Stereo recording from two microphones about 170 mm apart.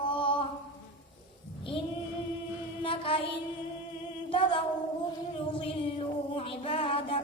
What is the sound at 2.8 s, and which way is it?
Mantra, 30° left (ahead or behind).